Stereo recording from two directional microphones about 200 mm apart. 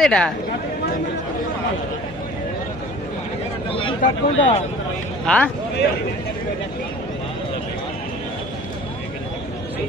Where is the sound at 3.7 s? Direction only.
25° left (ahead or behind).